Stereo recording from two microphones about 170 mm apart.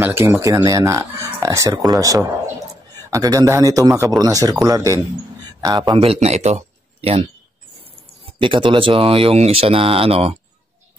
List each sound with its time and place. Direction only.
0.0 s a man's voice: 10° right (ahead or behind)
5.9 s speech: 35° right (ahead or behind)
8.4 s speech: 30° right (ahead or behind)